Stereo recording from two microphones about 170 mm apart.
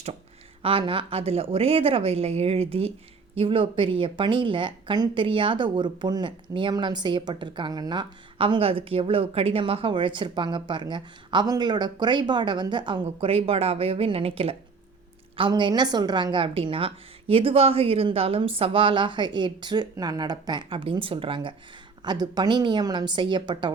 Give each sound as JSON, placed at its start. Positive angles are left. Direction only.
{"t": 0.6, "sound": "a woman's voice", "side_deg": -30}